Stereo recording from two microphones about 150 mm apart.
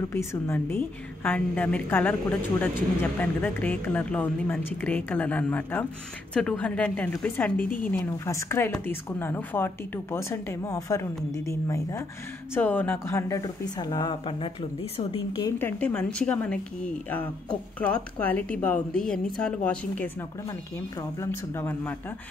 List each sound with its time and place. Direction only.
0.1 s speech: 15° left (ahead or behind); by 15.4 s 40° left (ahead or behind)
15.4 s speech: 15° left (ahead or behind)
21.2 s speech: 15° left (ahead or behind)